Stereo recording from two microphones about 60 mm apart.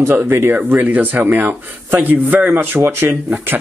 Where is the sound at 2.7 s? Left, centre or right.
Right.